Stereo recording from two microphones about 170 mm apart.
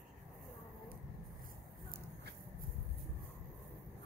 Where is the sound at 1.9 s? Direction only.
60° right (ahead or behind).